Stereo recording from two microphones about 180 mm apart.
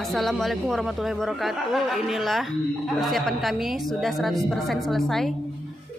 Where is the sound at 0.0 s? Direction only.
Centre (ahead or behind).